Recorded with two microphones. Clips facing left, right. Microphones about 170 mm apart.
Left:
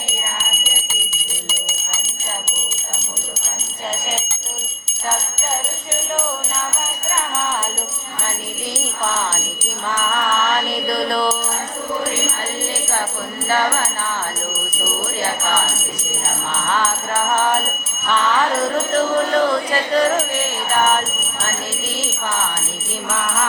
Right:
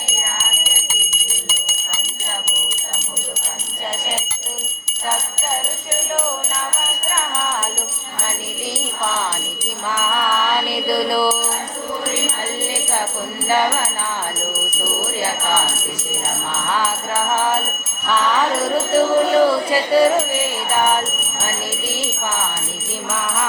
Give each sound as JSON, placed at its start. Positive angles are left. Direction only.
{"t": 1.5, "sound": "a sound", "side_deg": -50}
{"t": 10.8, "sound": "music", "side_deg": -5}
{"t": 18.9, "sound": "music", "side_deg": -10}